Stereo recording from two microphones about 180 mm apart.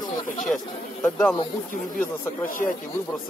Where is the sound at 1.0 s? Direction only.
10° left (ahead or behind).